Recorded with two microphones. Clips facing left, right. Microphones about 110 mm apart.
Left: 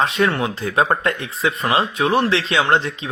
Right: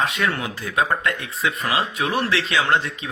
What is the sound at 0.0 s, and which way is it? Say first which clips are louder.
Speech: left 5 dB; 30° left (ahead or behind).